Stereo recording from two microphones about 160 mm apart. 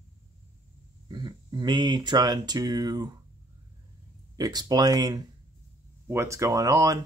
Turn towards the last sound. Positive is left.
turn(degrees=-20)  # may be behind; listen again after turning